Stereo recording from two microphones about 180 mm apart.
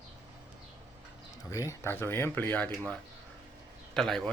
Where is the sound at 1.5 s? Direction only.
15° left (ahead or behind).